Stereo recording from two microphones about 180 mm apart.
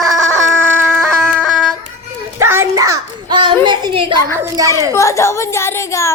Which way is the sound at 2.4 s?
15° right (ahead or behind).